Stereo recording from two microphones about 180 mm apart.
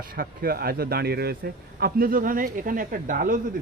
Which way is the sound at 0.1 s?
55° right (ahead or behind).